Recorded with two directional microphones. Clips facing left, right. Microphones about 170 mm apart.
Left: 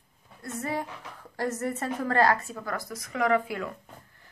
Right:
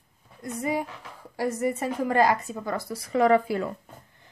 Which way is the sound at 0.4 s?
15° right (ahead or behind).